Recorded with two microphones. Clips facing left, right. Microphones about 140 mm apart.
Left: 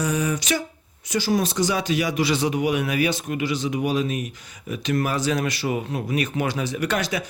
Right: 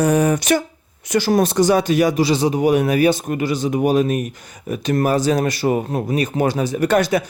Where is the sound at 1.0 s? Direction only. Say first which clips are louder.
Right 6 dB; 60° right (ahead or behind).